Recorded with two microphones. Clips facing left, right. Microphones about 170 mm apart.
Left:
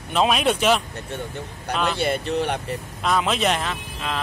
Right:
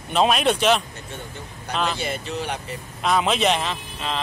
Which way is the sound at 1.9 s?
60° left (ahead or behind).